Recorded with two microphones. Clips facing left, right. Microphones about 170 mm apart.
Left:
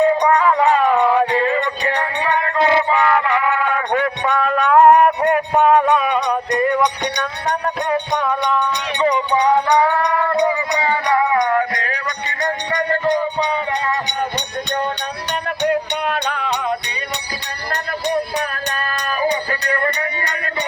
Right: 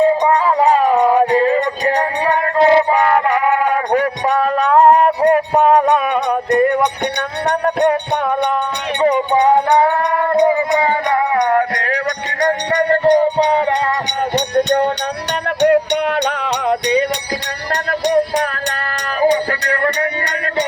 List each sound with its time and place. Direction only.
0.0 s music: 25° right (ahead or behind); by 20.7 s 75° right (ahead or behind)